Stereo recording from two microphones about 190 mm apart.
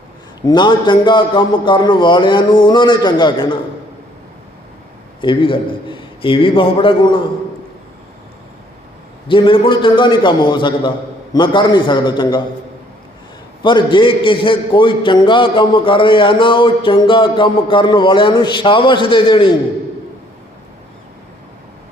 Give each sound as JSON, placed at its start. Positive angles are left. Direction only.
{"t": 0.4, "sound": "a man's voice", "side_deg": 25}
{"t": 5.2, "sound": "a man's voice", "side_deg": 25}
{"t": 9.2, "sound": "a man's voice", "side_deg": 25}
{"t": 13.6, "sound": "a man's voice", "side_deg": 25}